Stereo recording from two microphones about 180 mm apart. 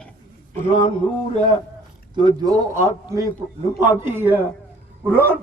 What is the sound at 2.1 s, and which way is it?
A man's voice, 25° right (ahead or behind).